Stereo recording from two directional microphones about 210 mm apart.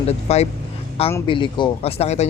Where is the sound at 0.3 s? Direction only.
30° left (ahead or behind).